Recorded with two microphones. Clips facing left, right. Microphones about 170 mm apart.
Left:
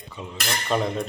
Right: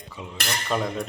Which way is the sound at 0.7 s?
5° right (ahead or behind).